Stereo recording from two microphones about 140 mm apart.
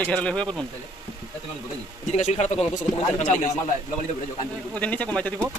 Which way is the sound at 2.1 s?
55° left (ahead or behind).